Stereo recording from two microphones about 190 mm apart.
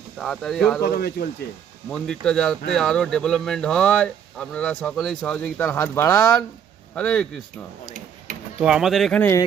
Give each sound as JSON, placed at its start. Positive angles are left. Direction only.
{"t": 0.2, "sound": "speech", "side_deg": 0}
{"t": 0.9, "sound": "speech", "side_deg": 50}
{"t": 1.9, "sound": "speech", "side_deg": 5}
{"t": 8.6, "sound": "speech", "side_deg": -5}